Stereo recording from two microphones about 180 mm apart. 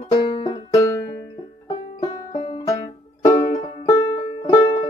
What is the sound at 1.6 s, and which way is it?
Music, 20° left (ahead or behind).